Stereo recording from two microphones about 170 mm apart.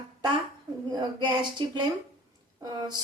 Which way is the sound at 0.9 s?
25° right (ahead or behind).